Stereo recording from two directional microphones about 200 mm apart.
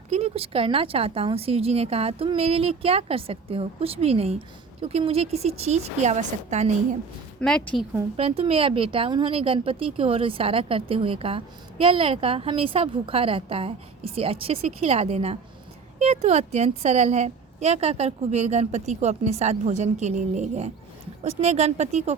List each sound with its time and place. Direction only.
0.1 s a woman's voice: 30° right (ahead or behind)
7.3 s speech: 5° left (ahead or behind)
8.1 s a woman's voice: 30° right (ahead or behind)